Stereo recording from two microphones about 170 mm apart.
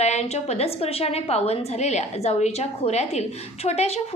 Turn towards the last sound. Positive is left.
turn(degrees=40)  # may be behind; listen again after turning